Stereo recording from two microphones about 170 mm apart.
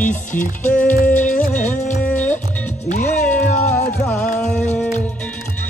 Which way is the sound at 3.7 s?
10° left (ahead or behind).